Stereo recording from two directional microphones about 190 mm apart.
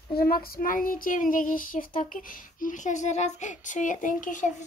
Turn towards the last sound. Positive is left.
turn(degrees=45)  # may be behind; listen again after turning